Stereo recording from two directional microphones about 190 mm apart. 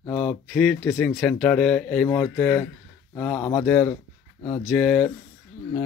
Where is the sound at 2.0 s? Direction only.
15° left (ahead or behind).